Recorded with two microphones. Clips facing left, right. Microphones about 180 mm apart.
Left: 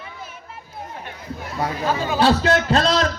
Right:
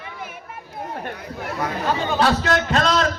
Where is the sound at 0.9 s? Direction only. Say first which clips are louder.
Right 3 dB; 55° right (ahead or behind).